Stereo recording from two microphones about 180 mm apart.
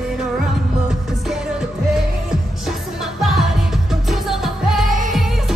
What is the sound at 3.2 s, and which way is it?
Music, centre (ahead or behind).